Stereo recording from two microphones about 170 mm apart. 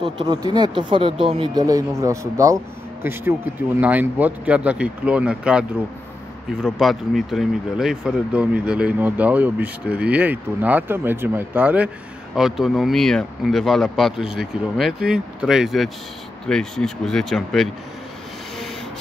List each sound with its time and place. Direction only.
0.0 s speech: 25° right (ahead or behind); by 17.6 s 5° left (ahead or behind)